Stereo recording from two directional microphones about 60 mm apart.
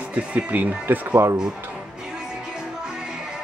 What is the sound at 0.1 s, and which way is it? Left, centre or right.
Speech, right.